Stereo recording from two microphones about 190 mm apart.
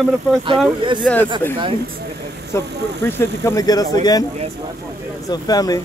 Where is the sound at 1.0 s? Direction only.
Centre (ahead or behind).